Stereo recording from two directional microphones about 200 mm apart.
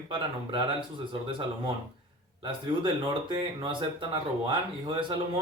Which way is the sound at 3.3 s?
25° right (ahead or behind).